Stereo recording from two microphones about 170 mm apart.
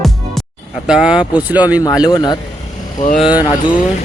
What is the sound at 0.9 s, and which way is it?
Speech, 5° right (ahead or behind).